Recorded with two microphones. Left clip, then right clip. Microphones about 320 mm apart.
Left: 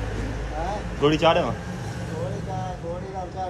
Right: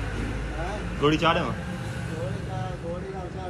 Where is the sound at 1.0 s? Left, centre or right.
Centre.